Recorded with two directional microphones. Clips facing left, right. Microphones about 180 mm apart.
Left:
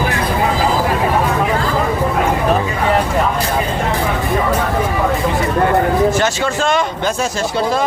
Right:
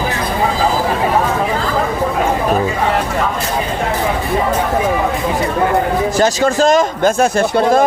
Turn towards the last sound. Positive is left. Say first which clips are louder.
# right 5 dB
turn(degrees=-50)  # may be behind; listen again after turning